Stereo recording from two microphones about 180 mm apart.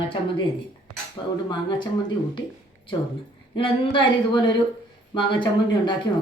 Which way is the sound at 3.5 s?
25° left (ahead or behind).